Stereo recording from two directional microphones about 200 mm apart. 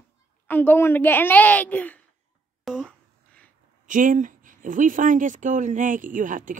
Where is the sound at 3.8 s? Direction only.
40° right (ahead or behind).